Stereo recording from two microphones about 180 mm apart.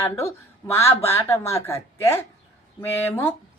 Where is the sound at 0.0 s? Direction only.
15° left (ahead or behind).